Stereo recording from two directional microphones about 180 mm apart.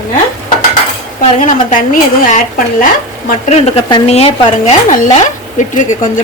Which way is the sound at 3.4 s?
35° left (ahead or behind).